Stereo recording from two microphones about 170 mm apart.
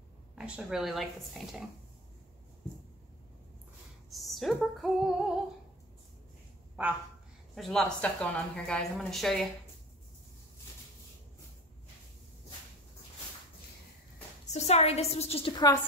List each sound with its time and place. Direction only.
0.4 s speech: 5° right (ahead or behind)
4.1 s female singing: centre (ahead or behind)
6.8 s speech: 5° right (ahead or behind)
14.4 s a woman's voice: 40° left (ahead or behind)